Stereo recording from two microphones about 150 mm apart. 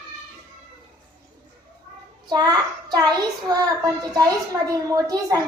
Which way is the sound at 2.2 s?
25° right (ahead or behind).